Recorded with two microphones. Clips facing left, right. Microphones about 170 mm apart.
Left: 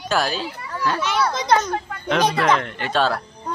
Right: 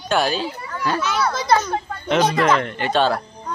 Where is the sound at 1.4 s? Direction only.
20° left (ahead or behind).